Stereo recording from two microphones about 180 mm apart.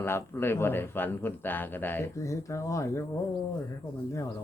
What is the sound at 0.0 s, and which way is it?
A man's voice, 15° left (ahead or behind).